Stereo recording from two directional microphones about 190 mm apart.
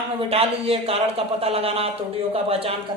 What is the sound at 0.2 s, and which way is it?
A man's voice, 30° right (ahead or behind).